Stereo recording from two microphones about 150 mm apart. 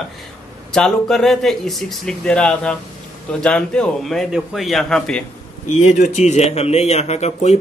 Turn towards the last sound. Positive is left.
turn(degrees=45)  # may be behind; listen again after turning